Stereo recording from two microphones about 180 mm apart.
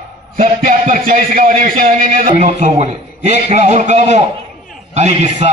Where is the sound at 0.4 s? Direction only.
50° right (ahead or behind).